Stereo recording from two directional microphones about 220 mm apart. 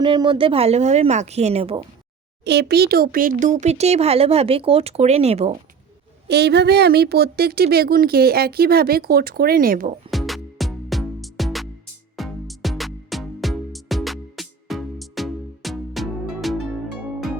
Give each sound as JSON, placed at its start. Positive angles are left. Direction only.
{"t": 0.0, "sound": "speech", "side_deg": -20}
{"t": 2.4, "sound": "speech", "side_deg": -50}
{"t": 6.2, "sound": "speech", "side_deg": -50}
{"t": 10.1, "sound": "music", "side_deg": 0}